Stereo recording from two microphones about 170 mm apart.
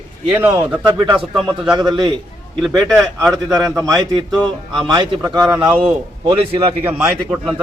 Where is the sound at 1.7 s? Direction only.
25° right (ahead or behind).